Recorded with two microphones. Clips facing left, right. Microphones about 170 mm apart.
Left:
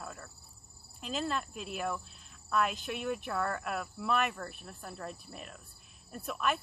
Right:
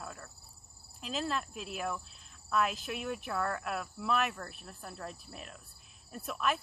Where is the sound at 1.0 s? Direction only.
Centre (ahead or behind).